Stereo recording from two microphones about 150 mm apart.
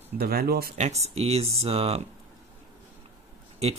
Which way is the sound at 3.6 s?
45° right (ahead or behind).